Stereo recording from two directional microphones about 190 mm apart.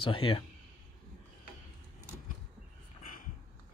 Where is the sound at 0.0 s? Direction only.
25° left (ahead or behind).